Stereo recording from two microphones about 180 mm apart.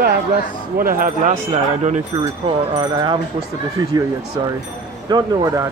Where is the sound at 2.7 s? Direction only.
25° right (ahead or behind).